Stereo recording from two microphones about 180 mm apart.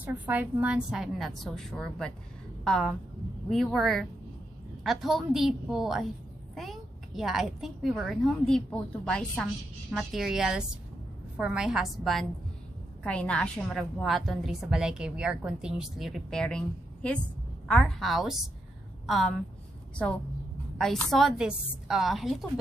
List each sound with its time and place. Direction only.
0.0 s a woman's voice: 10° right (ahead or behind)
20.7 s a woman's voice: centre (ahead or behind)